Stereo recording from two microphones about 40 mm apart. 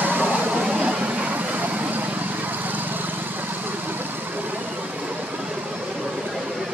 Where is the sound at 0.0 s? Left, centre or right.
Right.